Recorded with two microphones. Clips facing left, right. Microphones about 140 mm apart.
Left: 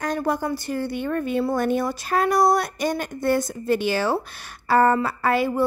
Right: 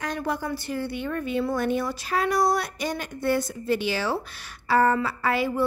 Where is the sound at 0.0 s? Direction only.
45° left (ahead or behind).